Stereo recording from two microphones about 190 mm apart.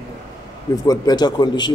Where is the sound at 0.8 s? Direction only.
20° left (ahead or behind).